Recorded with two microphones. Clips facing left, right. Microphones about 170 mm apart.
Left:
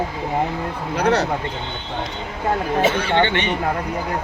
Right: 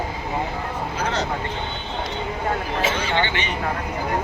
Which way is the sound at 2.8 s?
60° left (ahead or behind).